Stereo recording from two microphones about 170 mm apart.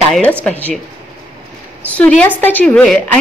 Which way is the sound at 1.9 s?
10° left (ahead or behind).